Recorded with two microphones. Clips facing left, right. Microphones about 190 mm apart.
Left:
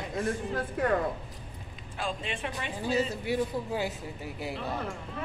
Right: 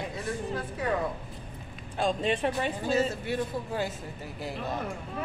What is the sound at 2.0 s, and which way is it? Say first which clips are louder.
Speech: right 7 dB; 35° right (ahead or behind).